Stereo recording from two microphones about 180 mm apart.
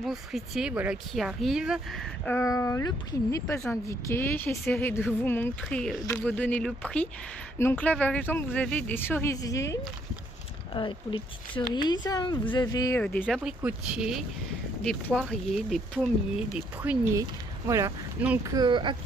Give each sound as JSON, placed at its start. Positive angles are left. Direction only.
{"t": 0.0, "sound": "speech", "side_deg": 0}
{"t": 13.2, "sound": "speech", "side_deg": -5}
{"t": 17.1, "sound": "speech", "side_deg": -15}
{"t": 18.5, "sound": "speech", "side_deg": -25}